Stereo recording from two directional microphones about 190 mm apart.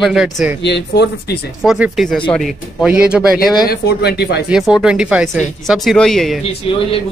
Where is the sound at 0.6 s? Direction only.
65° left (ahead or behind).